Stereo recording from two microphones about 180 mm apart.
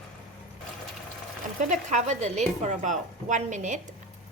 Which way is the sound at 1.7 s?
40° right (ahead or behind).